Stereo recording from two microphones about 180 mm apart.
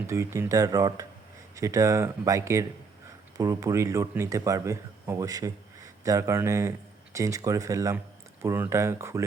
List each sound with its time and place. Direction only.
0.1 s a man's voice: 15° right (ahead or behind)